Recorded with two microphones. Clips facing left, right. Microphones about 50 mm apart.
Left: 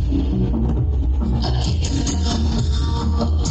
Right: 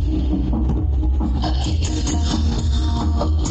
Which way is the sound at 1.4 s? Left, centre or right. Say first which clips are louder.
Even; centre.